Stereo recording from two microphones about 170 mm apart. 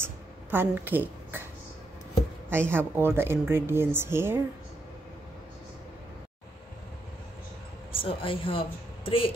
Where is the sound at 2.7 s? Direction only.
15° right (ahead or behind).